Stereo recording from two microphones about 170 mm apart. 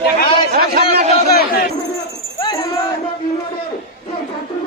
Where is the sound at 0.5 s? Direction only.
65° right (ahead or behind).